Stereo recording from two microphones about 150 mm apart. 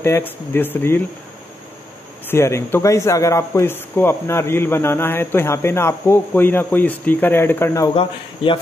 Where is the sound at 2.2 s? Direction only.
15° left (ahead or behind).